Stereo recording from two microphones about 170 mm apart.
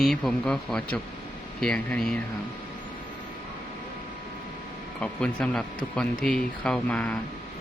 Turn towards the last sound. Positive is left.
turn(degrees=5)  # may be behind; listen again after turning